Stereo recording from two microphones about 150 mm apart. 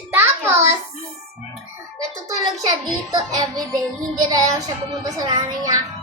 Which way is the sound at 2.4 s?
25° right (ahead or behind).